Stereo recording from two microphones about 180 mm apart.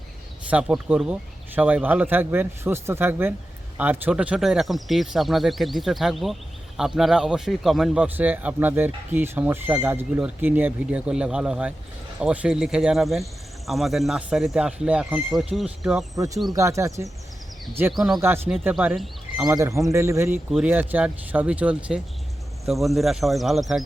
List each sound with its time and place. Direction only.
0.5 s speech: 5° right (ahead or behind)
16.1 s speech: 20° right (ahead or behind)
17.9 s speech: centre (ahead or behind)
18.2 s speech: 15° right (ahead or behind)
19.5 s speech: 15° right (ahead or behind); by 23.8 s centre (ahead or behind)